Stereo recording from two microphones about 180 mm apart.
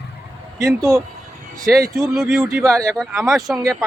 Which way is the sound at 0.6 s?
20° right (ahead or behind).